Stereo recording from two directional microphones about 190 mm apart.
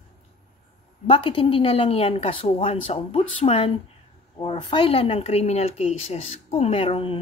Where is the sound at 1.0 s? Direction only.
25° left (ahead or behind).